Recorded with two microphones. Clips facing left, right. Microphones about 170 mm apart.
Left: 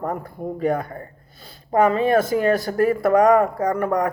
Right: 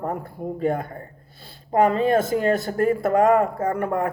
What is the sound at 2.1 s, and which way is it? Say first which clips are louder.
Speech: left 2 dB; 25° right (ahead or behind).